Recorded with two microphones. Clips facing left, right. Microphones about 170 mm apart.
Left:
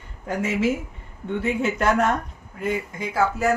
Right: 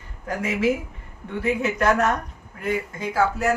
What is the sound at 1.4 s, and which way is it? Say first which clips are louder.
Speech: right 1 dB; 30° left (ahead or behind).